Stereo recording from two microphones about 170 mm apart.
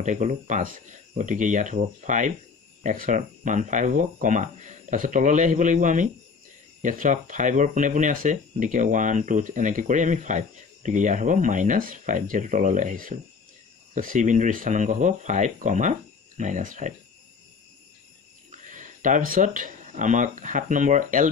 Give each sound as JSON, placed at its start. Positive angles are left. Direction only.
{"t": 0.0, "sound": "speech", "side_deg": -45}
{"t": 18.5, "sound": "speech", "side_deg": -50}